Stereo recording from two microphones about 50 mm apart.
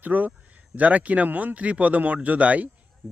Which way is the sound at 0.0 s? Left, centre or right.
Right.